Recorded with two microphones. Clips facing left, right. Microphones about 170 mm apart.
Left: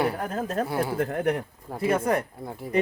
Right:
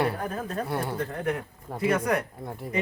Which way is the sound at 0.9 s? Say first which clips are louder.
Left 5 dB; 65° left (ahead or behind).